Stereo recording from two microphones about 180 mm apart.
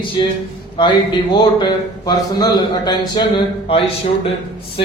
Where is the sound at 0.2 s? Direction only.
25° left (ahead or behind).